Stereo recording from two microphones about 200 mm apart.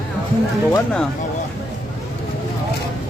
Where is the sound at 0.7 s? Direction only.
5° left (ahead or behind).